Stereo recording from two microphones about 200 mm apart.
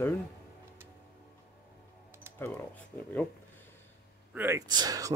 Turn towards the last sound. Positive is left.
turn(degrees=-20)  # may be behind; listen again after turning